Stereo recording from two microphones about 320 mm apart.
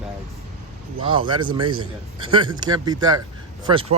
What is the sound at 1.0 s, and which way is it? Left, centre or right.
Speech, centre.